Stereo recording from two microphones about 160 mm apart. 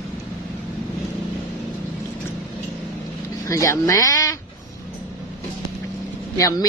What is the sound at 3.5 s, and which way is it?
Speech, 20° left (ahead or behind).